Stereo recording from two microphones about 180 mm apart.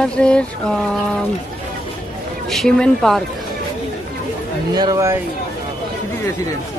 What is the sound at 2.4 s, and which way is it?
Speech, 5° left (ahead or behind).